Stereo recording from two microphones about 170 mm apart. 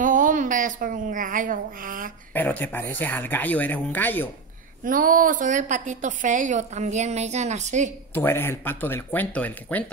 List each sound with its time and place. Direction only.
0.0 s speech: 50° right (ahead or behind)
2.3 s speech: 10° left (ahead or behind)
4.8 s a woman's voice: 55° right (ahead or behind)
8.1 s speech: 15° left (ahead or behind)